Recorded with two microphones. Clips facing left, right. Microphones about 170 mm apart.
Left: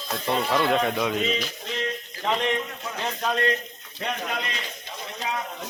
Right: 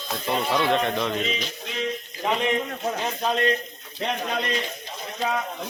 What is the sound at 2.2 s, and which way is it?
A man's voice, 10° right (ahead or behind).